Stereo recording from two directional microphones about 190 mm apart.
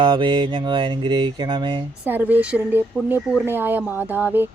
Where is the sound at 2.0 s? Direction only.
10° right (ahead or behind).